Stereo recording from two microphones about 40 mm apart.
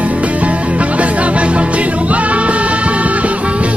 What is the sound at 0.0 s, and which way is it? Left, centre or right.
Music, right.